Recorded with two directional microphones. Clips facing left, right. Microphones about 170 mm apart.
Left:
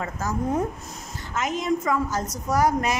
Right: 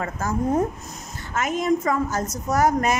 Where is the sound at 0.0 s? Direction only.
50° right (ahead or behind).